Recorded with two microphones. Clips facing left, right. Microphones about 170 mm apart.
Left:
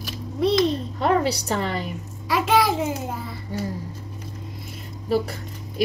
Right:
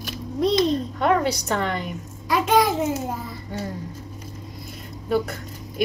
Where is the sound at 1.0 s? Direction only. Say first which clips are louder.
Left 1 dB; 35° left (ahead or behind).